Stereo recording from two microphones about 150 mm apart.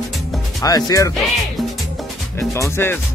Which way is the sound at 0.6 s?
25° left (ahead or behind).